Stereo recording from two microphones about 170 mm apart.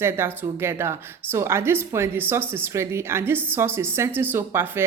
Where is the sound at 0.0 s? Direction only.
15° right (ahead or behind).